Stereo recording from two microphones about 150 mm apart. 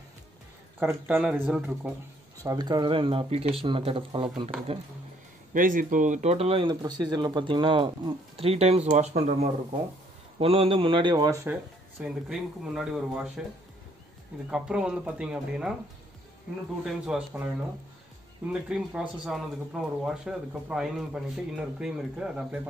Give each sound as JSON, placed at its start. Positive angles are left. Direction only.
{"t": 0.7, "sound": "speech", "side_deg": -15}
{"t": 2.4, "sound": "speech", "side_deg": -25}
{"t": 5.5, "sound": "speech", "side_deg": -65}
{"t": 6.7, "sound": "speech", "side_deg": -25}
{"t": 12.0, "sound": "speech", "side_deg": -5}
{"t": 14.5, "sound": "speech", "side_deg": -5}
{"t": 16.8, "sound": "speech", "side_deg": -5}
{"t": 18.5, "sound": "speech", "side_deg": -5}